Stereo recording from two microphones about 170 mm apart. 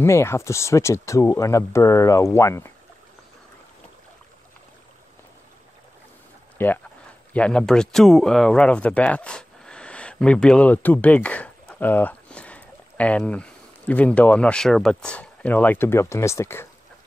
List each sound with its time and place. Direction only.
0.0 s speech: 15° left (ahead or behind)
6.6 s speech: 10° left (ahead or behind)